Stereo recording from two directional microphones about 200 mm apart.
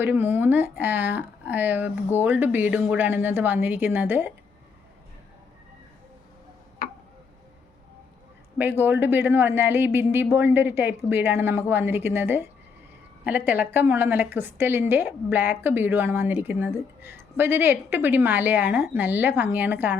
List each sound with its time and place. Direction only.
0.0 s a woman's voice: 10° right (ahead or behind)
6.8 s tick-tock: 50° left (ahead or behind)
8.5 s a woman's voice: 10° right (ahead or behind)